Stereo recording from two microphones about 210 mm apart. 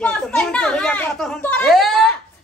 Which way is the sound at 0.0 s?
5° left (ahead or behind).